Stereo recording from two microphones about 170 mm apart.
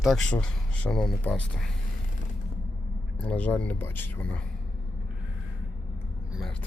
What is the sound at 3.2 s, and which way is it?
Speech, 10° left (ahead or behind).